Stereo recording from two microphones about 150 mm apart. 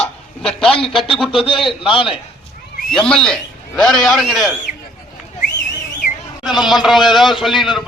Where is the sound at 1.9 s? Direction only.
35° left (ahead or behind).